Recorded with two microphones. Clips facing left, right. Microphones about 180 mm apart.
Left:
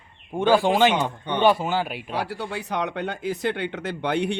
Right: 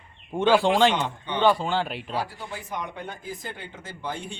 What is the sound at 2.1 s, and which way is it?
Speech, 70° left (ahead or behind).